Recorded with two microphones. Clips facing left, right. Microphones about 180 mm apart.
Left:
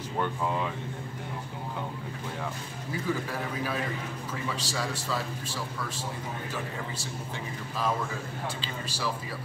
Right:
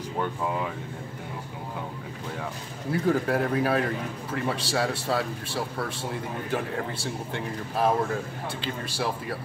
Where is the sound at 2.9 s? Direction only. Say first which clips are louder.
Right 8 dB; 65° right (ahead or behind).